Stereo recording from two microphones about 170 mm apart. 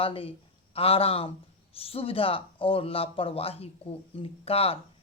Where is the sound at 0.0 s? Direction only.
30° left (ahead or behind).